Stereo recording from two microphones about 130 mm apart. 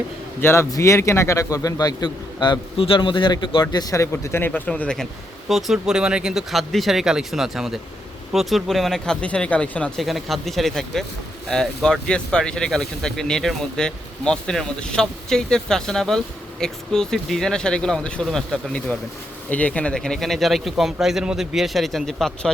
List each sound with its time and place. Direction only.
0.4 s speech: 20° left (ahead or behind); by 22.3 s centre (ahead or behind)